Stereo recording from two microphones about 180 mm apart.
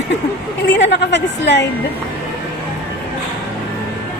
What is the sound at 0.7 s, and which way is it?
Speech, 85° left.